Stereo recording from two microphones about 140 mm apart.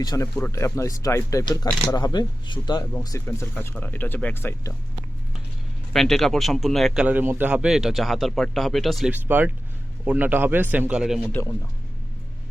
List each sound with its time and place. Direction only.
0.0 s speech: 30° left (ahead or behind)
5.9 s a man's voice: centre (ahead or behind)
9.1 s a man's voice: 15° right (ahead or behind)